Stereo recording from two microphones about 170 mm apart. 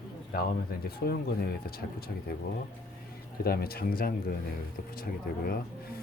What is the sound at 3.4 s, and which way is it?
Speech, 65° left (ahead or behind).